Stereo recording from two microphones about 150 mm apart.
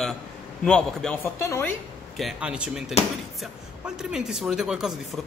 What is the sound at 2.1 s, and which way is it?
Speech, 5° right (ahead or behind).